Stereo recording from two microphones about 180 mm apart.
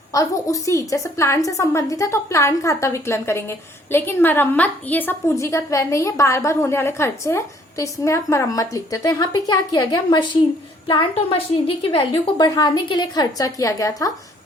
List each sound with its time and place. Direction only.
0.1 s a woman's voice: 20° left (ahead or behind)